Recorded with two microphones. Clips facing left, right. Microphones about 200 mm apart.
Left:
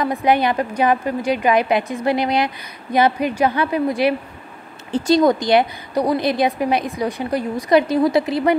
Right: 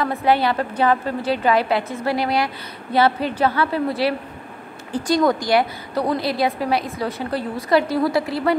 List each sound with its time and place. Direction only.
0.0 s a woman's voice: 15° left (ahead or behind)